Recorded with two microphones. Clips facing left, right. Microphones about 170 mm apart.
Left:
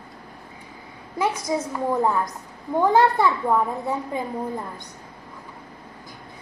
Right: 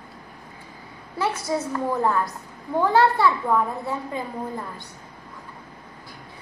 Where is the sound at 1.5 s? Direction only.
15° left (ahead or behind).